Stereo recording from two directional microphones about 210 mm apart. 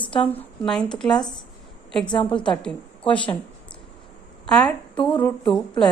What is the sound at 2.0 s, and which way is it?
Speech, 20° left (ahead or behind).